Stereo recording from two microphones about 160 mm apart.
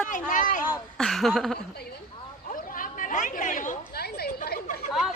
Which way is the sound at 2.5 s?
60° left (ahead or behind).